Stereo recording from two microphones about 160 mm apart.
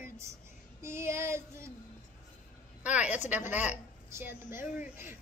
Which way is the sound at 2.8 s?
10° right (ahead or behind).